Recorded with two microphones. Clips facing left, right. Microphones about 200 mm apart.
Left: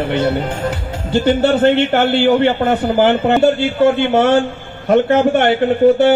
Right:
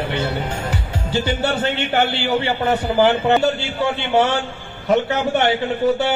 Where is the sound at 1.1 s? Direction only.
55° left (ahead or behind).